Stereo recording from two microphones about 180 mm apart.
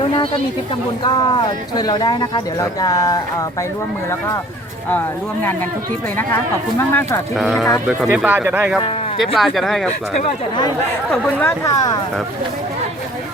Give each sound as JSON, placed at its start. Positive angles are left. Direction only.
{"t": 1.0, "sound": "speech", "side_deg": 25}
{"t": 4.9, "sound": "speech", "side_deg": 10}
{"t": 7.3, "sound": "speech", "side_deg": 0}
{"t": 8.0, "sound": "speech", "side_deg": -10}
{"t": 11.1, "sound": "speech", "side_deg": 10}